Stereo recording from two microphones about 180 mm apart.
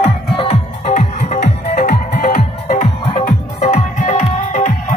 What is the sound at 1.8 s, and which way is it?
Music, 55° left (ahead or behind).